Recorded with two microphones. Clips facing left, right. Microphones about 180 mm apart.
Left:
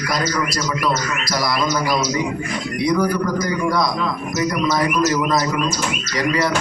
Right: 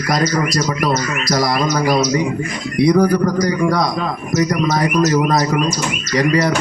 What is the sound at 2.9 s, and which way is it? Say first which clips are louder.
Speech: right 3 dB; 50° right (ahead or behind).